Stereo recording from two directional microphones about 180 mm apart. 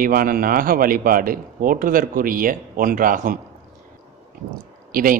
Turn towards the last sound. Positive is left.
turn(degrees=-50)  # may be behind; listen again after turning